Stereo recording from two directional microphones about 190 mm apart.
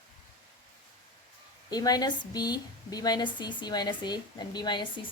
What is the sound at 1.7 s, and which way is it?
A woman's voice, 20° left (ahead or behind).